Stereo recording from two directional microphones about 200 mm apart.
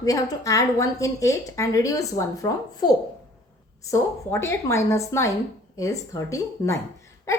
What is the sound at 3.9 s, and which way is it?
A woman's voice, 15° left (ahead or behind).